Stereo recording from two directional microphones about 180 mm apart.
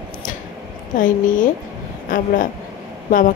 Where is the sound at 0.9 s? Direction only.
45° left (ahead or behind).